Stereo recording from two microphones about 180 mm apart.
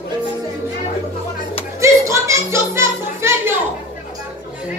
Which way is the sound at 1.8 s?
15° right (ahead or behind).